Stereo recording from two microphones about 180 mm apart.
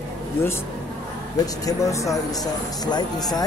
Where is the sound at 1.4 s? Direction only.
20° left (ahead or behind).